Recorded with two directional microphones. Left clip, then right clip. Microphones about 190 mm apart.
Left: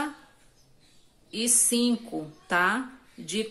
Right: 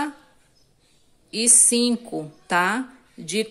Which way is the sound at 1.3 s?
35° right (ahead or behind).